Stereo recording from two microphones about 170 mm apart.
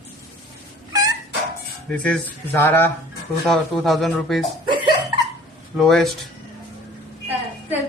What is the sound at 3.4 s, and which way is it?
Speech, centre (ahead or behind).